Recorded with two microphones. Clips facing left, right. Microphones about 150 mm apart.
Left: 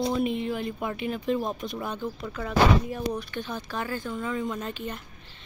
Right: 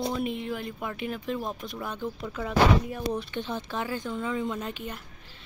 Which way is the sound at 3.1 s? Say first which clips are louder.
Right 1 dB; 25° right (ahead or behind).